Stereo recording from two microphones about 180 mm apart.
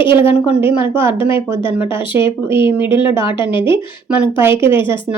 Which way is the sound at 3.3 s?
25° left (ahead or behind).